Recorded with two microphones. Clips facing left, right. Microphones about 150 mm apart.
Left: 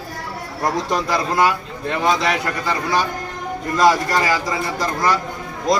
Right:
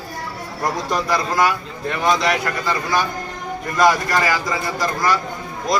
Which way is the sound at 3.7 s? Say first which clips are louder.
Left 1 dB; 30° left (ahead or behind).